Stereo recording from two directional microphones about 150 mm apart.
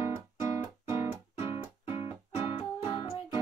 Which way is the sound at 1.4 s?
40° left (ahead or behind).